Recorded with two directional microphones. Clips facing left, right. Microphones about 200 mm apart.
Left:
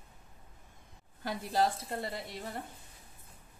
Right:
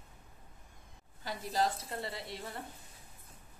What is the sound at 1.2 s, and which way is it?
A woman's voice, 50° left (ahead or behind).